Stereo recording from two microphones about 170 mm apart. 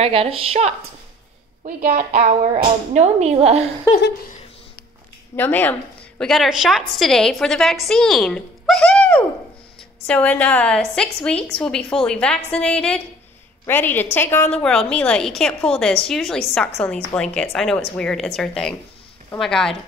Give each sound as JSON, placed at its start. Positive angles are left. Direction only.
{"t": 0.0, "sound": "speech", "side_deg": -35}
{"t": 1.8, "sound": "a woman's voice", "side_deg": -55}
{"t": 2.1, "sound": "speech", "side_deg": -45}
{"t": 5.3, "sound": "a woman's voice", "side_deg": 10}